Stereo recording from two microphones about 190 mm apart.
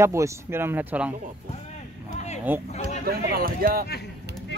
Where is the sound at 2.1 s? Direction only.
35° left (ahead or behind).